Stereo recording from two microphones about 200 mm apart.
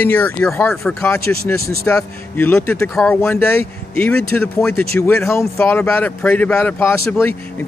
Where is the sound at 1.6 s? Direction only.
50° right (ahead or behind).